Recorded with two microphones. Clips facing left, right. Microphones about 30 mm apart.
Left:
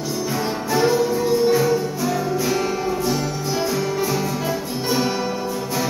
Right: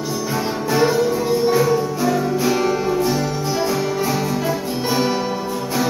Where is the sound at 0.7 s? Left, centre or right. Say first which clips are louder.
Right 1 dB; centre.